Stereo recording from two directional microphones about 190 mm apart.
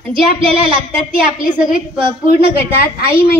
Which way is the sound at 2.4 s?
55° left (ahead or behind).